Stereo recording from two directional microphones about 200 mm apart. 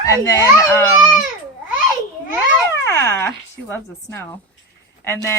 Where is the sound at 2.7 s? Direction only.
15° left (ahead or behind).